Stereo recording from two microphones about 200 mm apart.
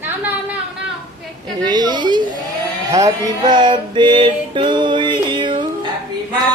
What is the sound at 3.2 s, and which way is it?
Music, 20° right (ahead or behind).